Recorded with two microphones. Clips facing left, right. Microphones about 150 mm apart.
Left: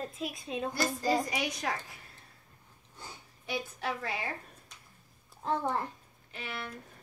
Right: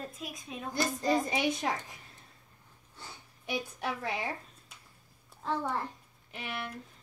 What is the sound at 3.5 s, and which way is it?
Speech, 15° right (ahead or behind).